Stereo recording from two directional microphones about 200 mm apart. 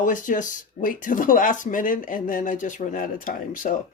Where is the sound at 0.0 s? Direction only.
40° left (ahead or behind).